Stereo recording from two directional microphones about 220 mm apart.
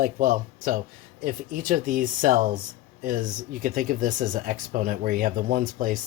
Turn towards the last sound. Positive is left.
turn(degrees=-40)  # may be behind; listen again after turning